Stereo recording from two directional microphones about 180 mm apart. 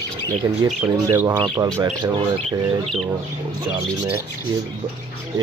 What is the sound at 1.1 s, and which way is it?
Speech, 15° right (ahead or behind).